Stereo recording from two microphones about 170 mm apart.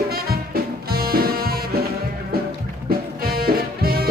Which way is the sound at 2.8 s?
60° right (ahead or behind).